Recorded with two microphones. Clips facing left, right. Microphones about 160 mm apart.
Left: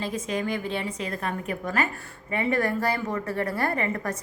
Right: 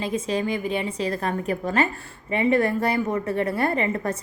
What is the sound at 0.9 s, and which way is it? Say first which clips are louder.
A woman's voice: right 5 dB; 35° right (ahead or behind).